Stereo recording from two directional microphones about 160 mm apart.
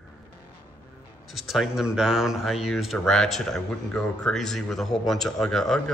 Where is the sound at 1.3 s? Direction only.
Centre (ahead or behind).